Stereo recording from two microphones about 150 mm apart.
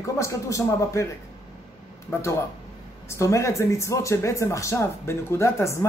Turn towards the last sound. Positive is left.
turn(degrees=20)  # may be behind; listen again after turning